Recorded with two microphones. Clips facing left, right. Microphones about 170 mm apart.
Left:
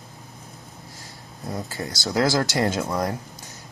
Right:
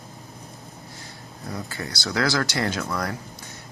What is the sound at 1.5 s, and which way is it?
Speech, 20° left (ahead or behind).